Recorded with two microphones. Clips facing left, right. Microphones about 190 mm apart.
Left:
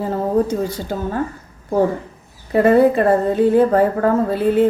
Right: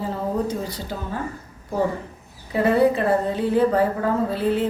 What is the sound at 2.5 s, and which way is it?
A woman's voice, 50° left (ahead or behind).